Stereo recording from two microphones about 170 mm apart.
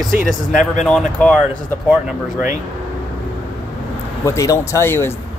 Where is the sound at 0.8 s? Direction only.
5° left (ahead or behind).